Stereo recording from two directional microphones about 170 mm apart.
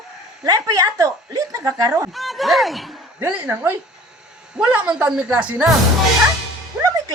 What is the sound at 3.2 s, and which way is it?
Speech, 10° right (ahead or behind).